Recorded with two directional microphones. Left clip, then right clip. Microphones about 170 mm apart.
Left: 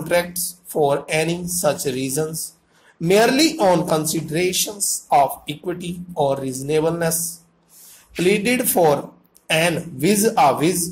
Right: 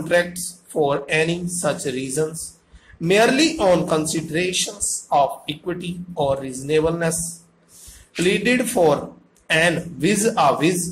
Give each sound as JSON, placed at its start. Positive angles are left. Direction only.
{"t": 0.1, "sound": "speech", "side_deg": 35}
{"t": 8.2, "sound": "speech", "side_deg": 35}